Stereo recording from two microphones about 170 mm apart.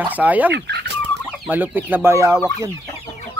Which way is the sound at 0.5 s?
85° right.